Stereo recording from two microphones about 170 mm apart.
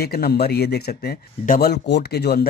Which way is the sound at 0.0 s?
65° left (ahead or behind).